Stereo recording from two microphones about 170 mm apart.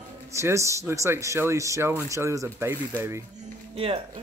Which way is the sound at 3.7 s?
35° right (ahead or behind).